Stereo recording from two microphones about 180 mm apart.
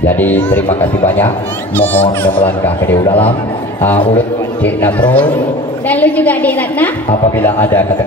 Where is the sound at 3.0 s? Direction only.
30° left (ahead or behind).